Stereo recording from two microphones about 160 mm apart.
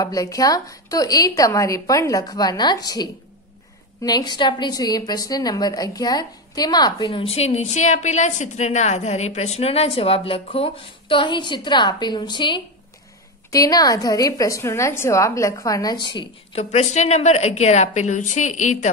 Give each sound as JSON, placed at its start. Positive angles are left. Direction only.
{"t": 0.0, "sound": "a woman's voice", "side_deg": 20}
{"t": 16.7, "sound": "a woman's voice", "side_deg": 45}